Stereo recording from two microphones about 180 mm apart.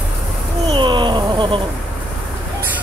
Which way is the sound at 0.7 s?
25° right (ahead or behind).